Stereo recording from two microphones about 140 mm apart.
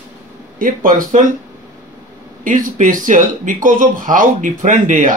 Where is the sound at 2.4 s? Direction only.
70° right (ahead or behind).